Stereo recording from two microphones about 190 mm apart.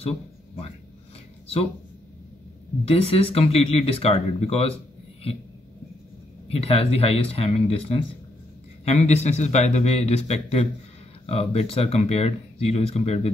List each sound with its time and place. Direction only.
2.8 s speech: 30° left (ahead or behind)
6.5 s speech: 30° left (ahead or behind)